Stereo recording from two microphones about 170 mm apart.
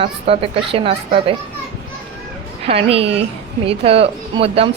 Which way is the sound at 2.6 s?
35° right (ahead or behind).